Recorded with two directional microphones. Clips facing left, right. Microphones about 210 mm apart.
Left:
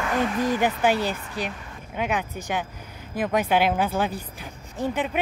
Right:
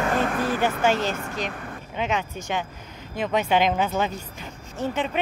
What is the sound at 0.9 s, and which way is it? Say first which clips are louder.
A woman's voice: even; 10° left (ahead or behind).